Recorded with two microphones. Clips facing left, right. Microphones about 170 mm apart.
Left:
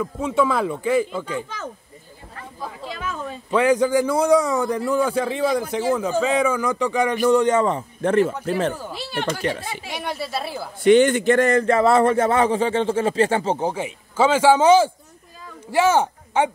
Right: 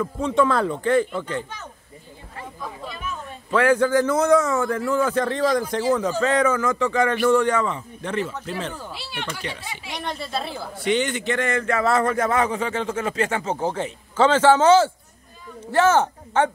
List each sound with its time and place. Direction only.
0.0 s a man's voice: 10° left (ahead or behind)
2.9 s a sound: 90° left
3.5 s a man's voice: 15° left (ahead or behind)
7.6 s speech: 45° left (ahead or behind)
9.8 s a man's voice: 5° left (ahead or behind)
10.8 s speech: 50° left (ahead or behind); by 13.6 s 30° left (ahead or behind)
13.6 s a man's voice: 10° left (ahead or behind)